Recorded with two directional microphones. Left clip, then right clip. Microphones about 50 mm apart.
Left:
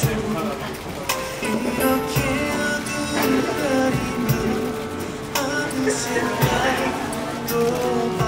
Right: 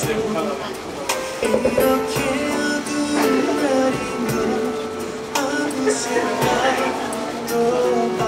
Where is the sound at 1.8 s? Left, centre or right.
Left.